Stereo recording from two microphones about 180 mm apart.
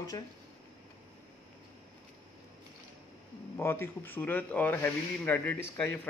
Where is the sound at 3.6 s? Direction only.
15° left (ahead or behind).